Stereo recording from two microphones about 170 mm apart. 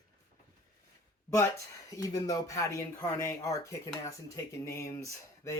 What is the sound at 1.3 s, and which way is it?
Speech, 15° left (ahead or behind).